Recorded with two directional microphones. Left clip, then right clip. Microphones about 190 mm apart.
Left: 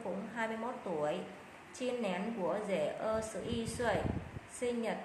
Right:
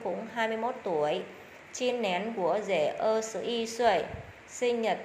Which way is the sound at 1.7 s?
25° right (ahead or behind).